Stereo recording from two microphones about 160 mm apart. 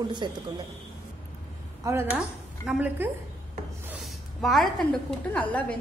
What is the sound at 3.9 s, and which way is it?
A woman's voice, centre (ahead or behind).